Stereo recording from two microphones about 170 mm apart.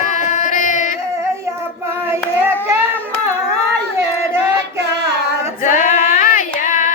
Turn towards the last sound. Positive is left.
turn(degrees=50)  # may be behind; listen again after turning